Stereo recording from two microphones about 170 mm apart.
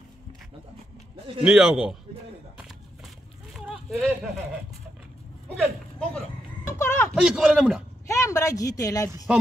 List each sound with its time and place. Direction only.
1.4 s speech: 5° right (ahead or behind)
3.5 s a sound: centre (ahead or behind)
5.6 s speech: centre (ahead or behind)
6.8 s a sound: 15° left (ahead or behind)
7.2 s speech: 5° right (ahead or behind)
8.1 s speech: 20° left (ahead or behind)